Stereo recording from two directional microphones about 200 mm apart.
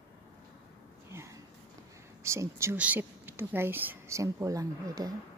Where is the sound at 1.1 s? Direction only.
15° right (ahead or behind).